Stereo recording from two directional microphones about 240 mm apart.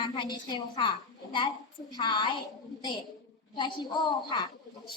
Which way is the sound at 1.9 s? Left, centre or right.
Centre.